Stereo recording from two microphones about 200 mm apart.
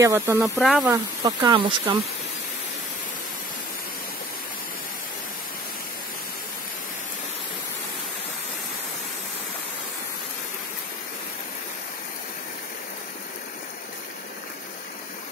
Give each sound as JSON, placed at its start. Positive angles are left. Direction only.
{"t": 0.0, "sound": "speech", "side_deg": -15}
{"t": 0.6, "sound": "speech", "side_deg": 0}
{"t": 0.9, "sound": "speech", "side_deg": -20}